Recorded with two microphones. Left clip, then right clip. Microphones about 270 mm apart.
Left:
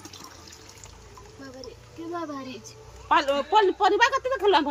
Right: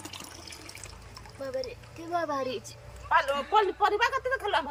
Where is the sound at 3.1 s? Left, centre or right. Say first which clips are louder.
Left 3 dB; left.